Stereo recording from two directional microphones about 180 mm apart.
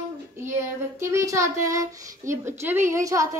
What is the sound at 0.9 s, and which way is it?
Speech, 15° right (ahead or behind).